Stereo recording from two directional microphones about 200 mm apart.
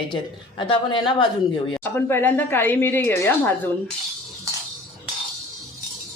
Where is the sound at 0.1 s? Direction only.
25° left (ahead or behind).